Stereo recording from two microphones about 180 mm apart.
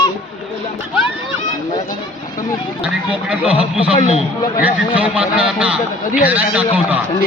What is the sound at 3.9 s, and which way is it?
Speech, 35° left (ahead or behind).